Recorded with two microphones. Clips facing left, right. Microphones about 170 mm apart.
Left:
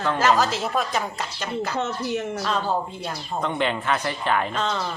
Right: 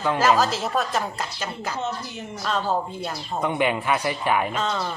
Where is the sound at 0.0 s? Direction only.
10° right (ahead or behind).